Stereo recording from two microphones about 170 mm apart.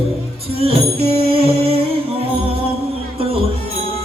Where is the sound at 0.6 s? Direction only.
35° right (ahead or behind).